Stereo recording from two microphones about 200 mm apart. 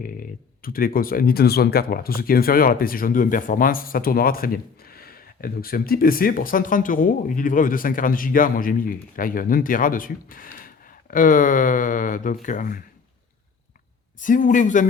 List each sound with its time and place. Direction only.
0.0 s speech: 45° left (ahead or behind)
14.2 s speech: 40° left (ahead or behind)